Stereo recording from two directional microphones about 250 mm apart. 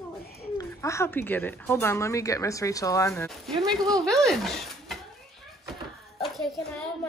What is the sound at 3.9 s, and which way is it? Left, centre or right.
Speech, centre.